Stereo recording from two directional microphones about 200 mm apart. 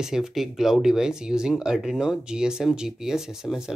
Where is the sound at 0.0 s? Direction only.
Centre (ahead or behind).